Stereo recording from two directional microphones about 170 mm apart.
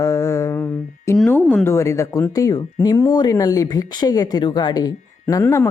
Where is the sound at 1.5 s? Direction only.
10° left (ahead or behind).